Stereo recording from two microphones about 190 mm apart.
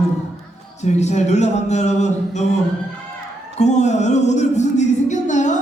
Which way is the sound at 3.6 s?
35° left (ahead or behind).